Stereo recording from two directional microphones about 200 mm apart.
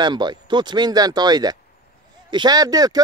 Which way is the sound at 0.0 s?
20° right (ahead or behind).